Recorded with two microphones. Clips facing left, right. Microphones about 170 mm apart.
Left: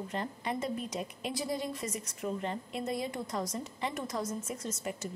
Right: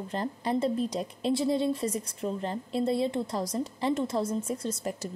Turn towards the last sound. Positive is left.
turn(degrees=-35)  # may be behind; listen again after turning